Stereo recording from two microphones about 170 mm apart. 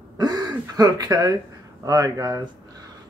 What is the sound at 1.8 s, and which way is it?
Speech, 20° right (ahead or behind).